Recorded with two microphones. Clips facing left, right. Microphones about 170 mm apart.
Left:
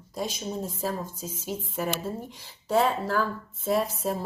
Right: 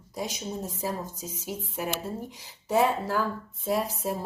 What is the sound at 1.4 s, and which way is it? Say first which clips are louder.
Speech: left 2 dB; 10° right (ahead or behind).